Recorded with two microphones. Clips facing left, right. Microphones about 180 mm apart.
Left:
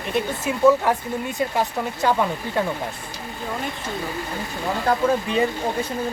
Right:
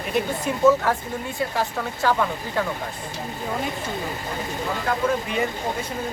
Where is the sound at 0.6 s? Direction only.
15° left (ahead or behind).